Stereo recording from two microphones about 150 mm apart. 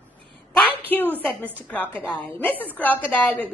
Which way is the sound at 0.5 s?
10° left (ahead or behind).